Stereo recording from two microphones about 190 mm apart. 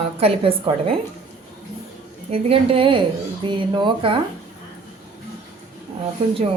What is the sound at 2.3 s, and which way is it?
A woman's voice, 30° right (ahead or behind).